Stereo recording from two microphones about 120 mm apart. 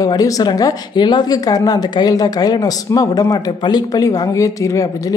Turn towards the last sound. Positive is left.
turn(degrees=25)  # may be behind; listen again after turning